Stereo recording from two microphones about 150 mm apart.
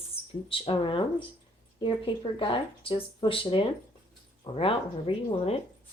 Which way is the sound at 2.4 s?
35° left (ahead or behind).